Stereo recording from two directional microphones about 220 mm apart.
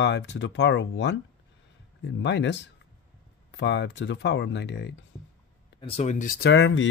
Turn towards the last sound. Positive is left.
turn(degrees=55)  # may be behind; listen again after turning